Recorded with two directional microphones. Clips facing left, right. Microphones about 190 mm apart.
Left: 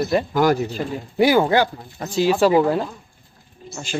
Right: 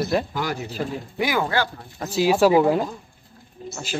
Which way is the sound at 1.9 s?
5° right (ahead or behind).